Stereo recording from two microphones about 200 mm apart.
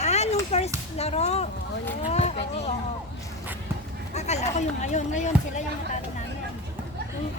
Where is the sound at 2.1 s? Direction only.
35° left (ahead or behind).